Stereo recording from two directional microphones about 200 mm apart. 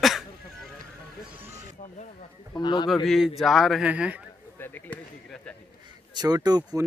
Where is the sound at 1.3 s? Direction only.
10° right (ahead or behind).